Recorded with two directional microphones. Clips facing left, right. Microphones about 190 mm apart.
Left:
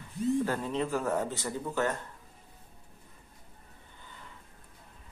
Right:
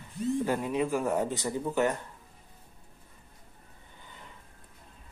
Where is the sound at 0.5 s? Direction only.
10° right (ahead or behind).